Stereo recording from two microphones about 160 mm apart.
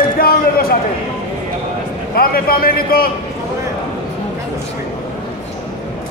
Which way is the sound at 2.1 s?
65° left (ahead or behind).